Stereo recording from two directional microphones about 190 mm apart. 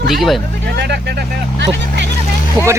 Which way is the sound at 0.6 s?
60° right (ahead or behind).